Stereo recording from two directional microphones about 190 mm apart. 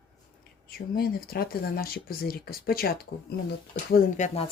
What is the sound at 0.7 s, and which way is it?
Speech, 55° left (ahead or behind).